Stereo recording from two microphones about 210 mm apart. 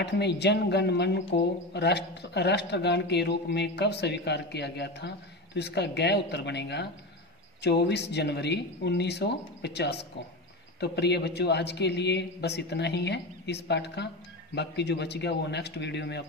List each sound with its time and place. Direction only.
0.0 s a man's voice: 55° left (ahead or behind)